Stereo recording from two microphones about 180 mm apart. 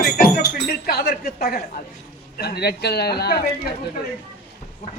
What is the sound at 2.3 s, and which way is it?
Speech, 65° left (ahead or behind).